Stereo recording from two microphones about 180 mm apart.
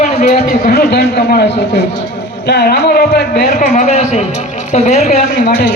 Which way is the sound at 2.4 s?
65° left (ahead or behind).